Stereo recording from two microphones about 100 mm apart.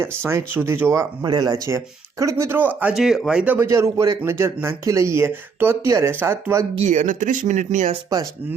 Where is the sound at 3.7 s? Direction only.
30° right (ahead or behind).